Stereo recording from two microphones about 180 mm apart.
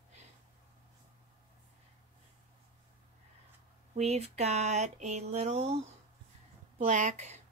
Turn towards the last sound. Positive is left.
turn(degrees=-40)  # may be behind; listen again after turning